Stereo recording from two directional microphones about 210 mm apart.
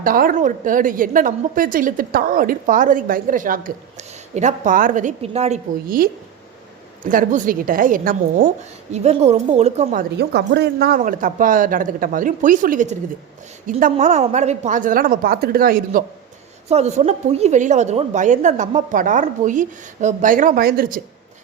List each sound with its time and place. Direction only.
0.0 s a woman's voice: 40° right (ahead or behind)
16.6 s a woman's voice: 30° right (ahead or behind)